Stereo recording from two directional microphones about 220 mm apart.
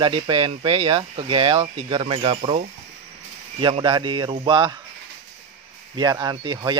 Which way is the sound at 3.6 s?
20° right (ahead or behind).